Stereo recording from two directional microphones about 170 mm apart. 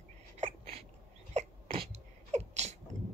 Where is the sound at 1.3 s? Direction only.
35° right (ahead or behind).